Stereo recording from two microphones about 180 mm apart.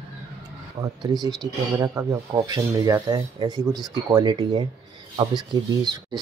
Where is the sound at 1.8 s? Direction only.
15° right (ahead or behind).